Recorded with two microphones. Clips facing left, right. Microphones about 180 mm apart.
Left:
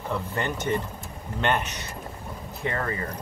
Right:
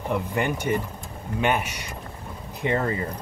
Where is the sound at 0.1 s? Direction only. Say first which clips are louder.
Right 4 dB; 15° right (ahead or behind).